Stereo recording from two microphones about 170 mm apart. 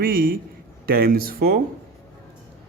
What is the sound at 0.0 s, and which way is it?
A man's voice, 60° right (ahead or behind).